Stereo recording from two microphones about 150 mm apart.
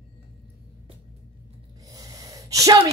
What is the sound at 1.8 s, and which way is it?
Sneeze, 25° right (ahead or behind).